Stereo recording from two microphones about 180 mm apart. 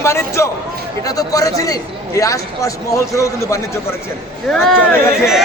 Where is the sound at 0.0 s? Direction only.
15° left (ahead or behind).